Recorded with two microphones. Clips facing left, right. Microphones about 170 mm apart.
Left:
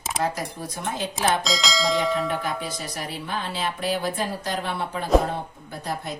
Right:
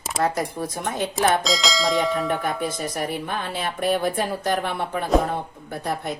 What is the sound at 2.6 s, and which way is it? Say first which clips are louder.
Speech: right 6 dB; 50° right (ahead or behind).